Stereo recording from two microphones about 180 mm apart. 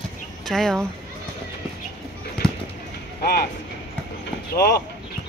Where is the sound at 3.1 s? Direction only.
60° left (ahead or behind).